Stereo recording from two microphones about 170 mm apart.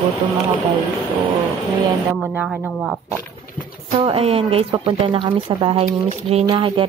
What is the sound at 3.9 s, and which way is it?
Speech, 35° right (ahead or behind).